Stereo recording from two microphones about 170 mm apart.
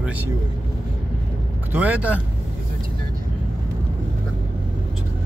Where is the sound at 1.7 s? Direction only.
10° right (ahead or behind).